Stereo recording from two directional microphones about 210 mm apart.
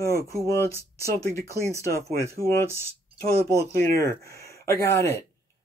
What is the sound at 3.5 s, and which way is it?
Speech, 10° left (ahead or behind).